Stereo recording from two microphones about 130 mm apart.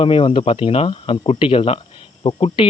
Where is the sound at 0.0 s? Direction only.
45° left (ahead or behind).